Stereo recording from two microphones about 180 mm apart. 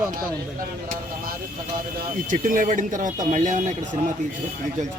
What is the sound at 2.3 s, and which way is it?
A man's voice, 50° right (ahead or behind).